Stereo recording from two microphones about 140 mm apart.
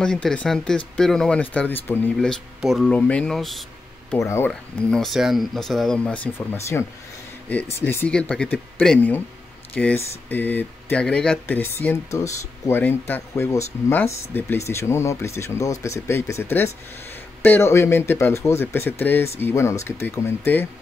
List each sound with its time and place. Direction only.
0.0 s speech: 5° left (ahead or behind)
2.1 s speech: centre (ahead or behind)
4.2 s speech: 20° left (ahead or behind)
4.9 s speech: centre (ahead or behind)